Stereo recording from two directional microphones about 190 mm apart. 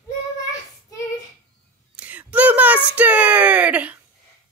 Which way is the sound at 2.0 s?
10° right (ahead or behind).